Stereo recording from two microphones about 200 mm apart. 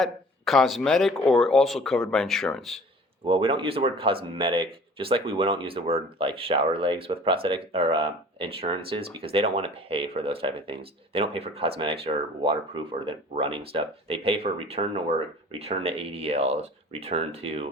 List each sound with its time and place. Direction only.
0.0 s speech: centre (ahead or behind)
3.2 s speech: 25° right (ahead or behind)